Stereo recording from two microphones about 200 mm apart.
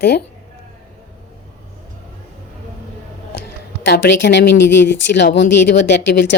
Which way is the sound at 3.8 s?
60° left (ahead or behind).